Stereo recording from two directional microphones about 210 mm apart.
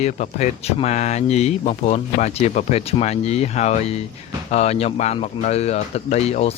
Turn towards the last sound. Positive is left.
turn(degrees=30)  # may be behind; listen again after turning